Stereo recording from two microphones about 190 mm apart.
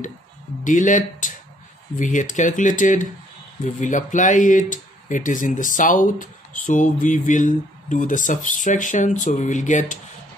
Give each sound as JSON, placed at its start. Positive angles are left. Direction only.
{"t": 0.7, "sound": "speech", "side_deg": 40}